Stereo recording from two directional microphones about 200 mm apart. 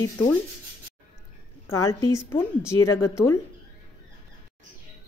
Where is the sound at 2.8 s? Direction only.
90° left.